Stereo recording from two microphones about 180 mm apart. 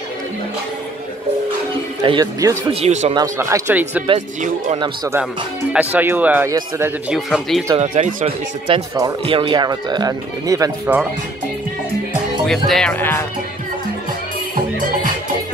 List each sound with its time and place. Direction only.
2.0 s speech: 25° right (ahead or behind)
2.7 s speech: 35° right (ahead or behind)
3.2 s speech: 15° right (ahead or behind)
4.7 s speech: 25° right (ahead or behind)
5.1 s speech: 5° right (ahead or behind)
7.1 s speech: centre (ahead or behind)
7.7 s speech: 35° right (ahead or behind)
8.7 s speech: 30° right (ahead or behind)
12.4 s speech: 5° left (ahead or behind)